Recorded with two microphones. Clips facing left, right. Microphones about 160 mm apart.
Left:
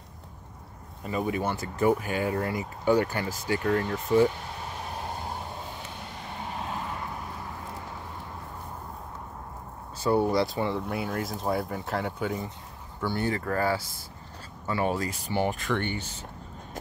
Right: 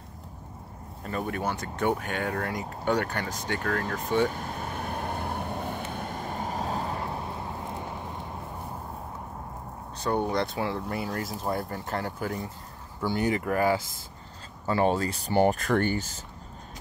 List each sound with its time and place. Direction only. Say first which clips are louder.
1.0 s speech: left 2 dB; 5° left (ahead or behind)
4.3 s vehicle: right 3 dB; 50° right (ahead or behind); by 7.8 s 25° right (ahead or behind)
9.9 s speech: left 3 dB; 5° left (ahead or behind)
13.0 s speech: right 2 dB; 15° right (ahead or behind)
14.7 s speech: right 3 dB; 30° right (ahead or behind)